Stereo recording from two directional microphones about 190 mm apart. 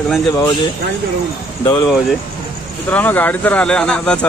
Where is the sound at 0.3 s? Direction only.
20° left (ahead or behind).